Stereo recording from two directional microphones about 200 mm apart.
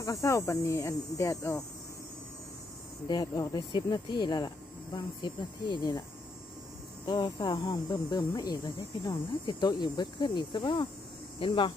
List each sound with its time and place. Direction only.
0.0 s speech: 15° left (ahead or behind)
3.1 s speech: 20° left (ahead or behind)
7.1 s speech: 20° left (ahead or behind)